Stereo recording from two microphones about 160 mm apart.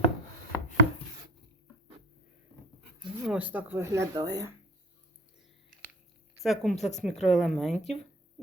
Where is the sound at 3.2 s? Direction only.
5° right (ahead or behind); by 4.5 s 25° right (ahead or behind).